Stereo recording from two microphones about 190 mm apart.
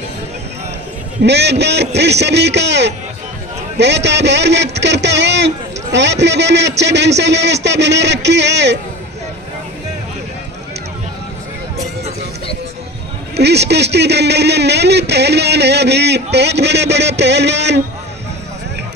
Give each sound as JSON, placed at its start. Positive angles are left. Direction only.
{"t": 1.2, "sound": "speech", "side_deg": -65}
{"t": 3.7, "sound": "a sound", "side_deg": -65}
{"t": 6.8, "sound": "speech", "side_deg": -65}
{"t": 13.4, "sound": "speech", "side_deg": -60}